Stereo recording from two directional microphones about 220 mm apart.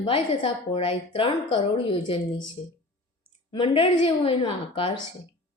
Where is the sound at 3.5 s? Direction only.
25° left (ahead or behind).